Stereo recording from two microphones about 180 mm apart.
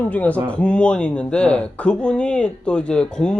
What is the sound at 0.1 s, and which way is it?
Speech, 10° left (ahead or behind).